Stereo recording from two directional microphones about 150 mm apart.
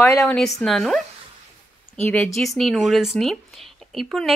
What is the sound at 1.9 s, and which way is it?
Speech, 10° left (ahead or behind).